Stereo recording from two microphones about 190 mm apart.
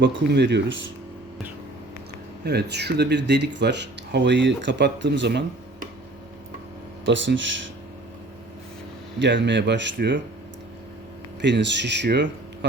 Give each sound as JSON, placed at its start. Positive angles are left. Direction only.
{"t": 0.0, "sound": "speech", "side_deg": -65}
{"t": 2.4, "sound": "speech", "side_deg": -60}
{"t": 7.0, "sound": "speech", "side_deg": -80}
{"t": 9.1, "sound": "speech", "side_deg": -70}
{"t": 11.3, "sound": "speech", "side_deg": -65}